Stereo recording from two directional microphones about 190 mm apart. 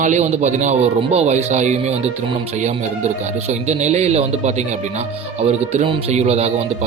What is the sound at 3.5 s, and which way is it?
Speech, 35° right (ahead or behind).